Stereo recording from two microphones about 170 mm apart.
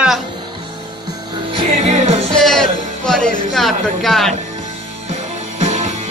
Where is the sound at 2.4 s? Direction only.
5° left (ahead or behind).